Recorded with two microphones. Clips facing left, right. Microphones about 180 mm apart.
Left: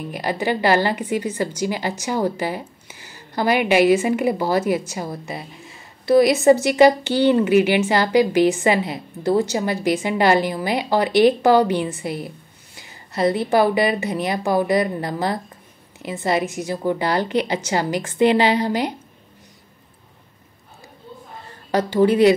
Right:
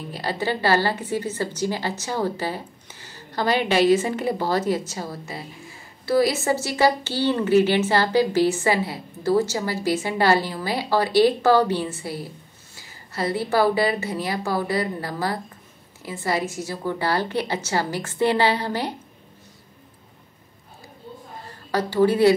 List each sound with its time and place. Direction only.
0.1 s a woman's voice: 15° left (ahead or behind)
21.7 s a woman's voice: 20° left (ahead or behind)